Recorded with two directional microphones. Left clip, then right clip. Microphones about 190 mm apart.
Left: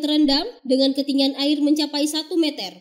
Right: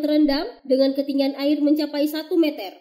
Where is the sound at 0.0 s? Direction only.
35° left (ahead or behind).